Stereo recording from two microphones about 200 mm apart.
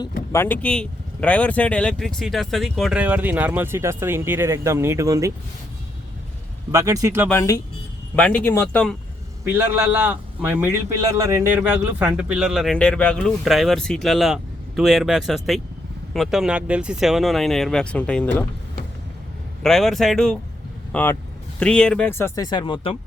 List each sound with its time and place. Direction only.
0.3 s speech: 10° left (ahead or behind); by 5.3 s 15° right (ahead or behind)
6.7 s speech: 15° right (ahead or behind)
7.3 s speech: 15° left (ahead or behind)
9.4 s speech: 10° right (ahead or behind); by 18.3 s 5° left (ahead or behind)
19.6 s speech: centre (ahead or behind); by 23.0 s 25° left (ahead or behind)